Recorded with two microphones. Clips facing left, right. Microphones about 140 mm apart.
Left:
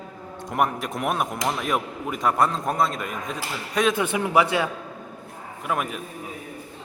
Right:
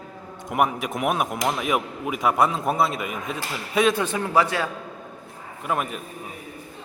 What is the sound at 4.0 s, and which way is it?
Speech, 15° left (ahead or behind).